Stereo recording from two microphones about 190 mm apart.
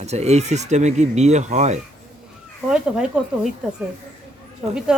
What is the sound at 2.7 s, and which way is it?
Speech, 5° right (ahead or behind).